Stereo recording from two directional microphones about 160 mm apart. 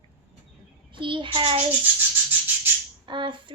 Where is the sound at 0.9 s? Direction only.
30° right (ahead or behind).